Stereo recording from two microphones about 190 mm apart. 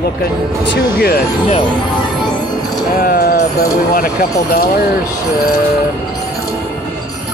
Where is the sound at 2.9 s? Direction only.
50° left (ahead or behind).